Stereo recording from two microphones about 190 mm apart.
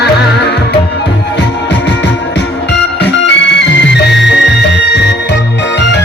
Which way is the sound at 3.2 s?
65° left (ahead or behind).